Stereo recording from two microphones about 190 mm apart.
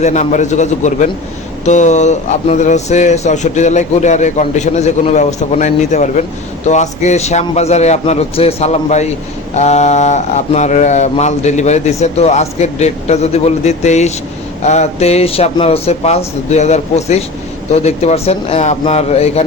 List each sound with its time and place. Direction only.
0.0 s speech: 40° left (ahead or behind)